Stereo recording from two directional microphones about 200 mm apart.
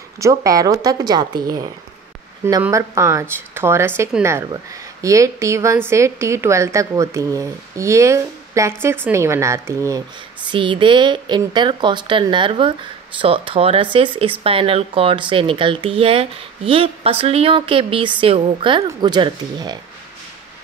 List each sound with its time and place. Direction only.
0.2 s a woman's voice: 15° right (ahead or behind)